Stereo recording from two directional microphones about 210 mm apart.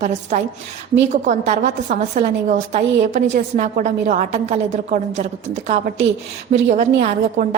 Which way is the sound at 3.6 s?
35° right (ahead or behind).